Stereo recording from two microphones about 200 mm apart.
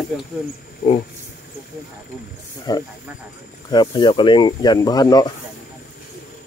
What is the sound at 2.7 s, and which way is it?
Speech, 20° left (ahead or behind).